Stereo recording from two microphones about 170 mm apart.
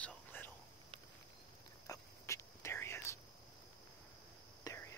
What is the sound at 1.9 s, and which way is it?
Whispering, 20° left (ahead or behind).